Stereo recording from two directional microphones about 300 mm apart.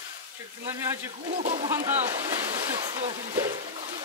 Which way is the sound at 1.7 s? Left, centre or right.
Centre.